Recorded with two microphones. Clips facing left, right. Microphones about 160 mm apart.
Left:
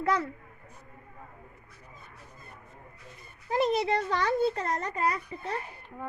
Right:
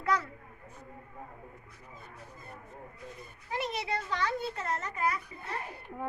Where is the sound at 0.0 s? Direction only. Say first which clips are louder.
Left 3 dB; 25° left (ahead or behind).